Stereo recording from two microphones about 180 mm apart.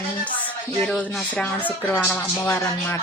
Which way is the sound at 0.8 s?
5° left (ahead or behind).